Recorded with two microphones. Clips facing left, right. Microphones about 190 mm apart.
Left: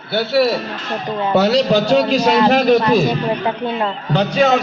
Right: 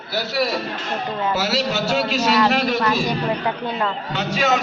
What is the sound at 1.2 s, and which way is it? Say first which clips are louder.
A man's voice: left 9 dB; 35° left (ahead or behind).